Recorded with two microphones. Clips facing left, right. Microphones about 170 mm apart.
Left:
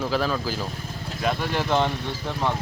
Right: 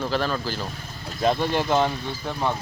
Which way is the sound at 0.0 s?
5° left (ahead or behind).